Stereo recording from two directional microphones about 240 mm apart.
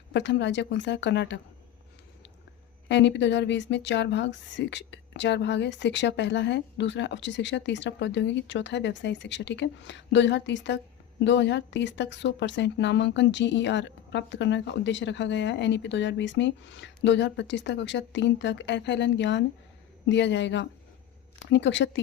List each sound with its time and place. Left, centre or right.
0.1 s speech: left
2.9 s speech: left